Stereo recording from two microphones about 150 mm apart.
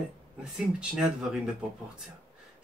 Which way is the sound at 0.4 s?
5° right (ahead or behind).